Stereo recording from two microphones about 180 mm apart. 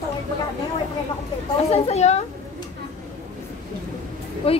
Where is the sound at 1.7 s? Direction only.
35° left (ahead or behind).